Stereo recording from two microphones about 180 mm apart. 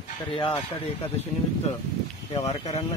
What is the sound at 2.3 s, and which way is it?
Speech, 35° left (ahead or behind).